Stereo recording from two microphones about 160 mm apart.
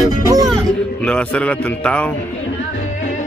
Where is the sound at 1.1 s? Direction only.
5° left (ahead or behind).